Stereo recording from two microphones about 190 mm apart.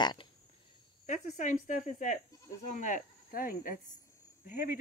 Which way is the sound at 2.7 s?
40° left (ahead or behind).